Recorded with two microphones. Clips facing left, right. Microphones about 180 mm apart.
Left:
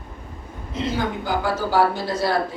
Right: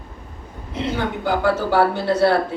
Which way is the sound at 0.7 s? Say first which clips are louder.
Right 1 dB; 65° right (ahead or behind).